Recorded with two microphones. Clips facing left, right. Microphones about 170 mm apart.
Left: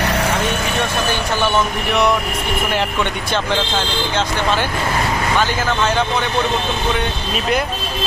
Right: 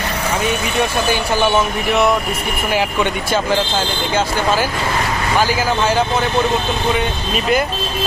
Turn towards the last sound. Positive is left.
turn(degrees=0)  # may be behind; listen again after turning